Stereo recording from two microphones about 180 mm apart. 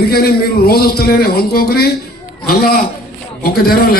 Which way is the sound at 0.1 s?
60° left (ahead or behind).